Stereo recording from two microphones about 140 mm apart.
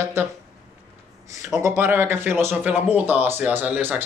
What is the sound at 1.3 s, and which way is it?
Speech, 20° right (ahead or behind).